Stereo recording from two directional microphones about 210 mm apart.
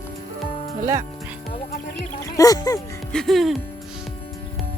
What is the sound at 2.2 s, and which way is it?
Speech, 15° left (ahead or behind).